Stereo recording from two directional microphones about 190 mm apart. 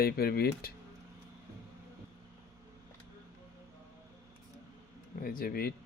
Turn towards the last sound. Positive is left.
turn(degrees=50)  # may be behind; listen again after turning